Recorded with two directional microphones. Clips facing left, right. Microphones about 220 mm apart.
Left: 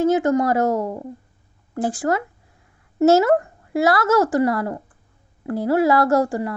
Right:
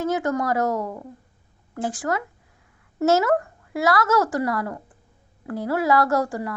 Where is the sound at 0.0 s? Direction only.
25° left (ahead or behind).